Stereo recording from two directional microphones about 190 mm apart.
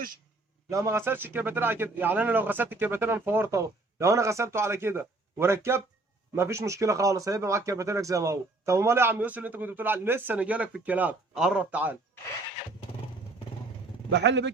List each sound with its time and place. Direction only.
0.7 s speech: 15° right (ahead or behind)
14.1 s speech: 65° right (ahead or behind)